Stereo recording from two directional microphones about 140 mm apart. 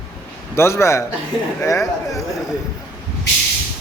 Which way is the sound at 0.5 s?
20° left (ahead or behind).